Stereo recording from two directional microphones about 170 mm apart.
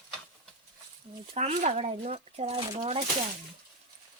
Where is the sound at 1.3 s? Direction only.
40° right (ahead or behind).